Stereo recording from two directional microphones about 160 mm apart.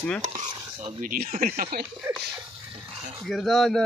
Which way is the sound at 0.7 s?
55° right (ahead or behind).